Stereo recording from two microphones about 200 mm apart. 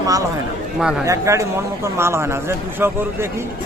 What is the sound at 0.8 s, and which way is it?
Speech, 5° right (ahead or behind).